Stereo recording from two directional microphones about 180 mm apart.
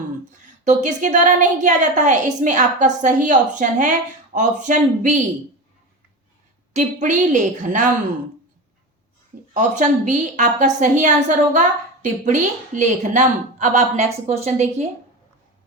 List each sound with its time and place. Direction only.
0.6 s a woman's voice: 40° right (ahead or behind)
6.7 s a woman's voice: 45° right (ahead or behind)
9.5 s a woman's voice: 45° right (ahead or behind)